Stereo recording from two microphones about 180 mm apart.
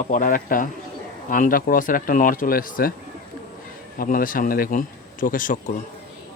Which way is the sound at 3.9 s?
50° left (ahead or behind).